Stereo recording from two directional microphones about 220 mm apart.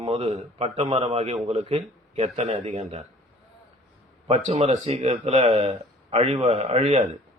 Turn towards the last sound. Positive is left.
turn(degrees=-30)  # may be behind; listen again after turning